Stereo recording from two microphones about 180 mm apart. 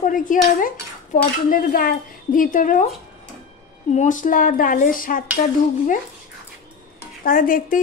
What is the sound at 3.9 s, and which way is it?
A woman's voice, 45° left (ahead or behind).